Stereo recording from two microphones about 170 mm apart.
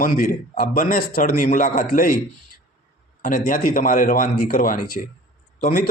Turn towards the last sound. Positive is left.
turn(degrees=55)  # may be behind; listen again after turning